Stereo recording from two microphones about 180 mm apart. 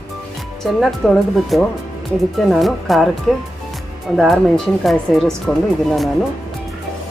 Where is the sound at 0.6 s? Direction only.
Centre (ahead or behind).